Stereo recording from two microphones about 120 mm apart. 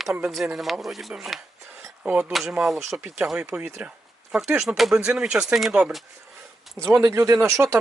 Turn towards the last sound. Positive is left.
turn(degrees=-25)  # may be behind; listen again after turning